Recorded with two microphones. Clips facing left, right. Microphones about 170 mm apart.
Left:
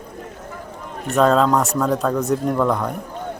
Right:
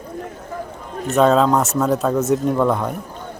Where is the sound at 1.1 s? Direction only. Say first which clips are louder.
Right 1 dB; centre (ahead or behind).